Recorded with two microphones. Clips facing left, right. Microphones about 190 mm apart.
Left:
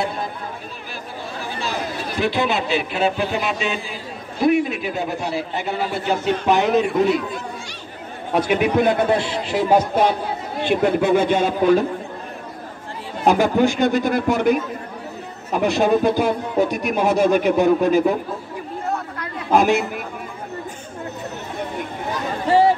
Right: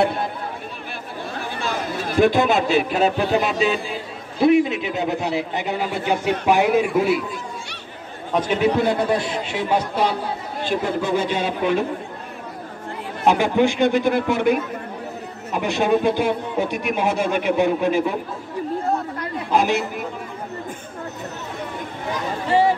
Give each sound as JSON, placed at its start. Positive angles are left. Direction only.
{"t": 1.6, "sound": "speech", "side_deg": -50}
{"t": 4.4, "sound": "a man's voice", "side_deg": -25}
{"t": 8.3, "sound": "a man's voice", "side_deg": 10}
{"t": 10.6, "sound": "a man's voice", "side_deg": 60}
{"t": 13.2, "sound": "a man's voice", "side_deg": 40}
{"t": 15.6, "sound": "a man's voice", "side_deg": 40}
{"t": 19.5, "sound": "a man's voice", "side_deg": 50}